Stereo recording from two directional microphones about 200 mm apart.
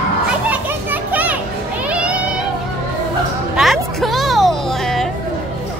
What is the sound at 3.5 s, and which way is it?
Music, centre (ahead or behind).